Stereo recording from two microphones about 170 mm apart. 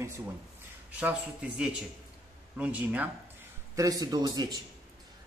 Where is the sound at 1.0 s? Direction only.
5° right (ahead or behind).